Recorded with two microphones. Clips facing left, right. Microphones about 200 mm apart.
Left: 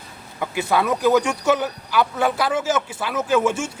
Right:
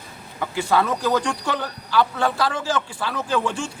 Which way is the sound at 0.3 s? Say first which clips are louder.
Even; 15° left (ahead or behind).